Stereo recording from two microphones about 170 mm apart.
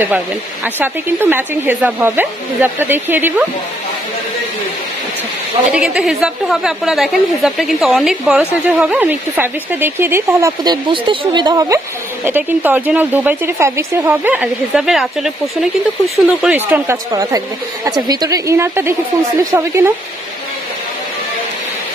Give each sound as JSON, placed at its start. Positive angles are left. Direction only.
{"t": 0.7, "sound": "speech", "side_deg": -10}
{"t": 5.7, "sound": "a woman's voice", "side_deg": -5}
{"t": 12.3, "sound": "a woman's voice", "side_deg": -10}